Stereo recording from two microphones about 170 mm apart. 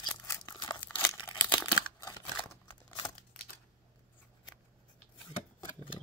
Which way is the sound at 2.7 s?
25° left (ahead or behind).